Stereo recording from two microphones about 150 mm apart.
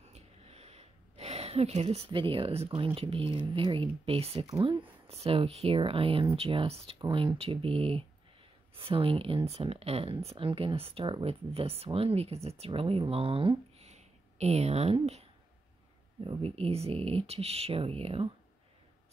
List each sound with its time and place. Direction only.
0.1 s speech: 45° right (ahead or behind)
4.5 s speech: 30° right (ahead or behind); by 15.2 s 45° right (ahead or behind)
16.3 s speech: 40° right (ahead or behind)